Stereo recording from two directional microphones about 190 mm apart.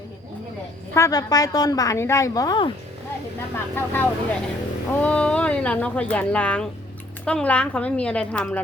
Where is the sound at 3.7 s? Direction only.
10° left (ahead or behind).